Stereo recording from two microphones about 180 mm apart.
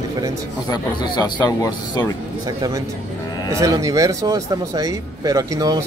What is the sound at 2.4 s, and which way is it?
A man's voice, 20° right (ahead or behind).